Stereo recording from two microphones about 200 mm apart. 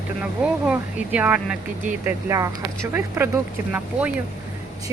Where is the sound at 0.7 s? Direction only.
5° right (ahead or behind).